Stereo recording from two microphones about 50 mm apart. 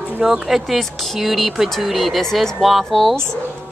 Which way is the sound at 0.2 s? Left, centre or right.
Centre.